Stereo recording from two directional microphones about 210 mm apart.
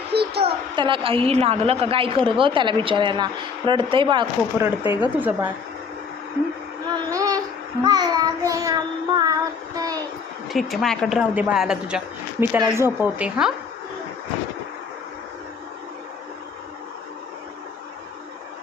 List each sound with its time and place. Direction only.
0.1 s a sound: 50° right (ahead or behind)
0.8 s a woman's voice: 25° right (ahead or behind)
4.9 s speech: 10° right (ahead or behind)
6.8 s child singing: 20° right (ahead or behind)
9.7 s a sound: 15° right (ahead or behind)
10.5 s a woman's voice: centre (ahead or behind)
12.5 s speech: 15° right (ahead or behind)